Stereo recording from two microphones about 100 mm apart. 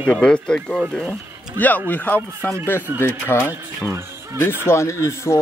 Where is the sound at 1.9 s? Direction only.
15° left (ahead or behind).